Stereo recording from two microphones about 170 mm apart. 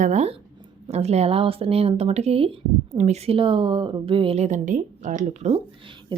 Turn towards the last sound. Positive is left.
turn(degrees=-40)  # may be behind; listen again after turning